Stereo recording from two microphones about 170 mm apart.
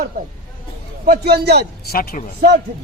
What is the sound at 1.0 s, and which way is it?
Speech, 70° right (ahead or behind).